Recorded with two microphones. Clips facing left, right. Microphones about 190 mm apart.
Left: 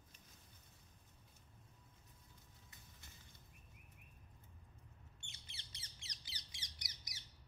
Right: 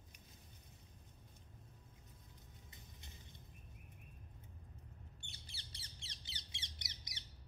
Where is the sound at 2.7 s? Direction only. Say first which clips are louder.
Right 3 dB; 20° right (ahead or behind).